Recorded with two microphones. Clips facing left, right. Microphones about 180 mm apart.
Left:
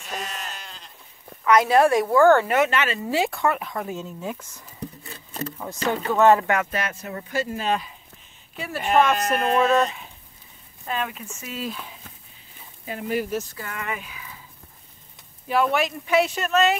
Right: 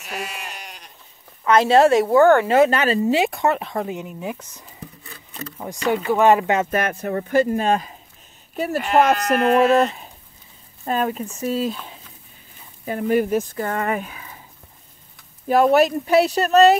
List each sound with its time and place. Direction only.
0.1 s sheep: 10° right (ahead or behind)
1.4 s speech: 30° right (ahead or behind)
2.5 s speech: 35° right (ahead or behind)
3.1 s speech: 20° right (ahead or behind)
5.9 s speech: 15° right (ahead or behind)
6.7 s speech: 55° right (ahead or behind)
10.9 s speech: 40° right (ahead or behind)
12.8 s speech: 50° right (ahead or behind)
15.4 s speech: 45° right (ahead or behind)